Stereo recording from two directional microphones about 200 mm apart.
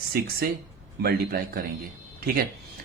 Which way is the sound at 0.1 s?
50° right (ahead or behind).